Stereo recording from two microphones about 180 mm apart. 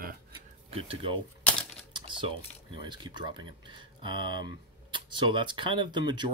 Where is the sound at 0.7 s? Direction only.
30° right (ahead or behind).